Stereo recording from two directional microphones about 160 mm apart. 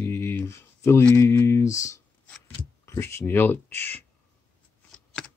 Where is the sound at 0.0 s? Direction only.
15° left (ahead or behind).